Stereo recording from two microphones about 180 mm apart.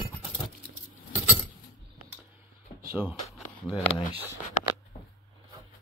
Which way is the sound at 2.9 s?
10° right (ahead or behind).